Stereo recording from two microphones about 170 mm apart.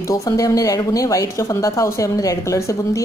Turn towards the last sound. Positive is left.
turn(degrees=20)  # may be behind; listen again after turning